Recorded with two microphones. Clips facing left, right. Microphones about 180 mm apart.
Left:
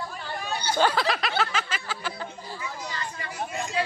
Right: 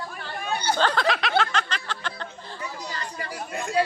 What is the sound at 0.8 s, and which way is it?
Speech, 5° left (ahead or behind).